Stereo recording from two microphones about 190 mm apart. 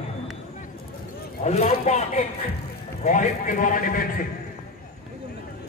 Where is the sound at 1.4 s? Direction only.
35° left (ahead or behind).